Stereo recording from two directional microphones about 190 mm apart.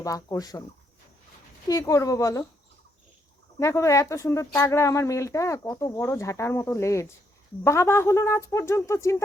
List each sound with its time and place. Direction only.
0.0 s speech: 20° left (ahead or behind)
1.6 s speech: 15° left (ahead or behind)
3.6 s speech: 15° left (ahead or behind)